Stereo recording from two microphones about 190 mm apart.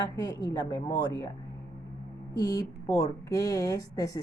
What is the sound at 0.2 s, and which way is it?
A woman's voice, 20° left (ahead or behind).